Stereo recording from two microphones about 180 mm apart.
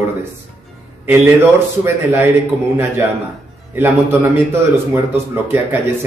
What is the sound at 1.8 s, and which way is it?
Speech, 15° right (ahead or behind).